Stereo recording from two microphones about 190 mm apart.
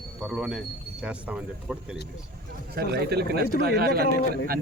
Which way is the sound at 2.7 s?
60° right (ahead or behind).